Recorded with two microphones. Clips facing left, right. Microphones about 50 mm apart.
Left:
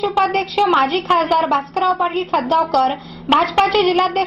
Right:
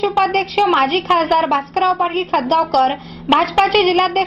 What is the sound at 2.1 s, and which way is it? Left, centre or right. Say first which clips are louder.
Speech: right 1 dB; right.